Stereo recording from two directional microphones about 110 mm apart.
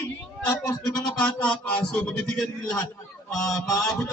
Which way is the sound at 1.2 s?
10° left (ahead or behind).